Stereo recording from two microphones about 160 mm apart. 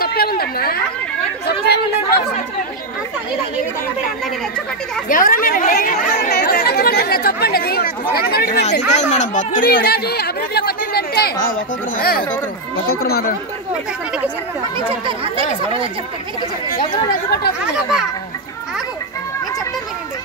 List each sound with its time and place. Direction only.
0.0 s a woman's voice: 70° left (ahead or behind)
1.4 s speech: 90° left
5.0 s speech: 60° left (ahead or behind)
8.8 s speech: 50° left (ahead or behind); by 13.2 s 70° left (ahead or behind)
14.9 s speech: 35° right (ahead or behind)